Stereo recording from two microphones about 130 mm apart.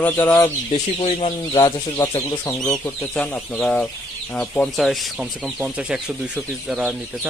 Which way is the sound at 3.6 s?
10° left (ahead or behind).